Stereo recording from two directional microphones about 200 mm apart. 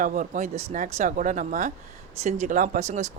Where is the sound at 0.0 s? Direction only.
40° right (ahead or behind).